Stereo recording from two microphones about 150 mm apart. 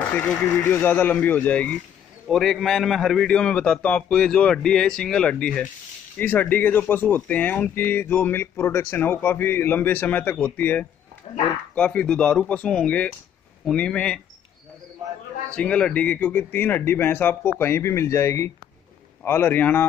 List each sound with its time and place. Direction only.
0.1 s a man's voice: 10° left (ahead or behind)
11.3 s speech: 40° left (ahead or behind)
11.7 s speech: 10° left (ahead or behind)
15.5 s speech: 5° left (ahead or behind)